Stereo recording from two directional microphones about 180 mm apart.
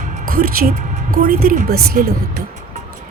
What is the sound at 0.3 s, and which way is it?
A woman's voice, 55° right (ahead or behind).